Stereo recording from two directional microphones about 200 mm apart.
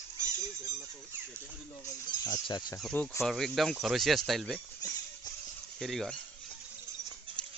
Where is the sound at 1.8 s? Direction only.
20° left (ahead or behind).